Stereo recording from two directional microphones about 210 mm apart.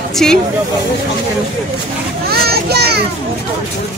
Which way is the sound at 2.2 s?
45° right (ahead or behind).